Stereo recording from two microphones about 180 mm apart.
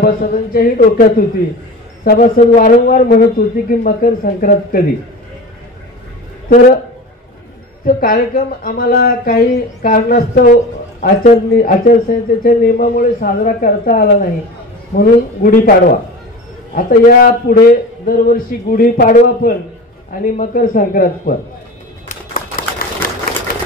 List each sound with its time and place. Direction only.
0.0 s speech: 55° left (ahead or behind)
7.8 s speech: 50° left (ahead or behind)
16.7 s speech: 50° left (ahead or behind)
22.0 s typewriter: 45° left (ahead or behind)